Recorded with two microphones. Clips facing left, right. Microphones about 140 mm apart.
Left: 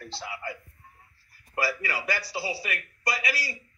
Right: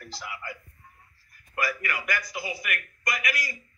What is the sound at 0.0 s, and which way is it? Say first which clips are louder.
A woman's voice: left 3 dB; 30° left (ahead or behind).